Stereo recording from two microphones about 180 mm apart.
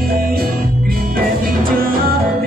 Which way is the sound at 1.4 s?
55° right (ahead or behind).